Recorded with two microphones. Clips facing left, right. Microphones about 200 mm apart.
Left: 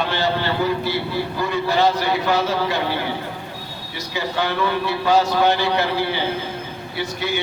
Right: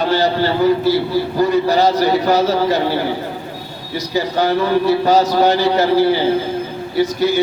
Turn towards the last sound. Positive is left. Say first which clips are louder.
# right 9 dB
turn(degrees=-40)  # may be behind; listen again after turning